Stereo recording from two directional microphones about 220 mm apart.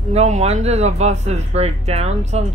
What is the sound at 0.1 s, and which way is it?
Speech, 30° right (ahead or behind).